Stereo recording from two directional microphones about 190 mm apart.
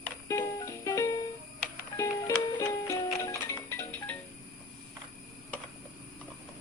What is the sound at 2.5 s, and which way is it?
Music, 15° left (ahead or behind).